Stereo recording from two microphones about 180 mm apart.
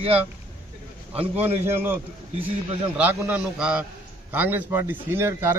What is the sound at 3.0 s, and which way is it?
A man's voice, 10° right (ahead or behind).